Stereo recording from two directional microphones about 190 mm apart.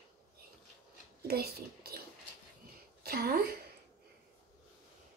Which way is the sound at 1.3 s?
55° right (ahead or behind).